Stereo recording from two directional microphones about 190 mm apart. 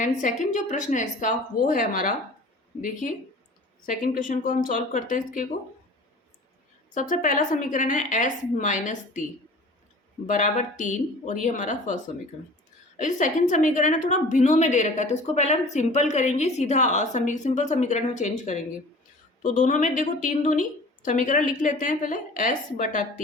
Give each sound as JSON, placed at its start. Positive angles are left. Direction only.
{"t": 0.0, "sound": "a woman's voice", "side_deg": 40}
{"t": 3.8, "sound": "a woman's voice", "side_deg": 45}
{"t": 6.9, "sound": "a woman's voice", "side_deg": 45}
{"t": 10.2, "sound": "a woman's voice", "side_deg": 40}
{"t": 13.0, "sound": "a woman's voice", "side_deg": 40}